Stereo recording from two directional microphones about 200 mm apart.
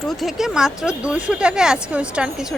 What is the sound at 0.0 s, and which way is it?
A woman's voice, centre (ahead or behind).